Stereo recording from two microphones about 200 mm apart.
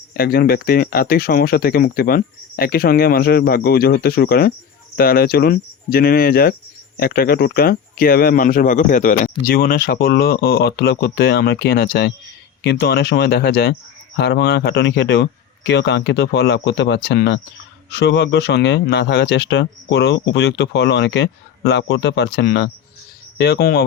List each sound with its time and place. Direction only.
0.2 s speech: 50° left (ahead or behind)